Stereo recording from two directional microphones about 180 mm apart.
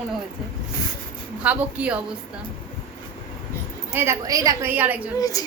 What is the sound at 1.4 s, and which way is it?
Speech, 10° right (ahead or behind).